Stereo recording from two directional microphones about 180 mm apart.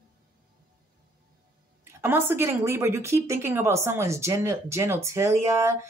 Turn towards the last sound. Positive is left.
turn(degrees=-15)  # may be behind; listen again after turning